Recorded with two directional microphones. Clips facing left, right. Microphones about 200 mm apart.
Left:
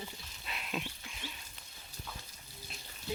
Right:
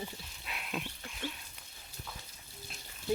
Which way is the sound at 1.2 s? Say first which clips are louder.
Right 7 dB; 50° right (ahead or behind).